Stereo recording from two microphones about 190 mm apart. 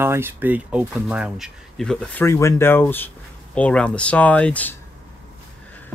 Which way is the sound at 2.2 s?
15° left (ahead or behind).